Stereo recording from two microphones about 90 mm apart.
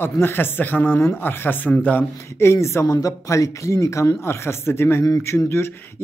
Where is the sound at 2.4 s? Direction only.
30° left (ahead or behind).